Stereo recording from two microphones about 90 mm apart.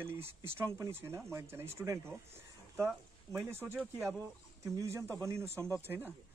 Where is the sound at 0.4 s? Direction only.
30° right (ahead or behind).